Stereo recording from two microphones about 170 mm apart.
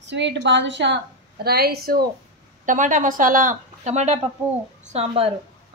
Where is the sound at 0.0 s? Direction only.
90° right.